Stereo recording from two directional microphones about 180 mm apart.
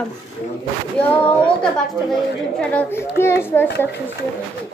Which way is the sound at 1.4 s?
5° left (ahead or behind).